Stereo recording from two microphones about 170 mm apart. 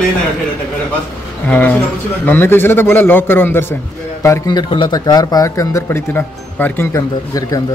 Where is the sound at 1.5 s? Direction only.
10° left (ahead or behind).